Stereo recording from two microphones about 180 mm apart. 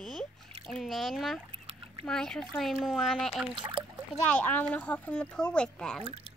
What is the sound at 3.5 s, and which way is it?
Speech, 25° right (ahead or behind).